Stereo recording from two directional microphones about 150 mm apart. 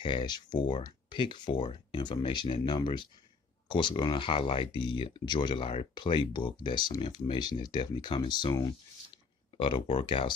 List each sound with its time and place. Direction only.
0.0 s speech: 30° left (ahead or behind)